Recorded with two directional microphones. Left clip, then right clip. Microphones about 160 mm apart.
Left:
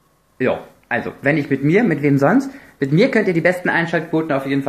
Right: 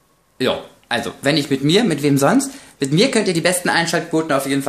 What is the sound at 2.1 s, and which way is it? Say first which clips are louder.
Speech: right 1 dB; centre (ahead or behind).